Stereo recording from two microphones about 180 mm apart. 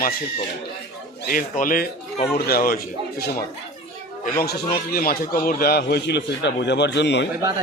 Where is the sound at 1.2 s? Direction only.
50° left (ahead or behind).